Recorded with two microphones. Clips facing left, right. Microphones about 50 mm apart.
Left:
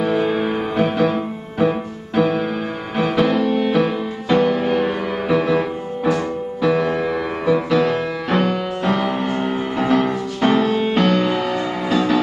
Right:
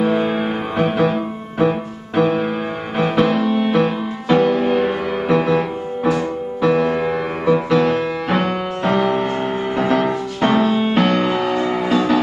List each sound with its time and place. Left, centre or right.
0.0 s music: centre
8.9 s music: centre
9.4 s music: centre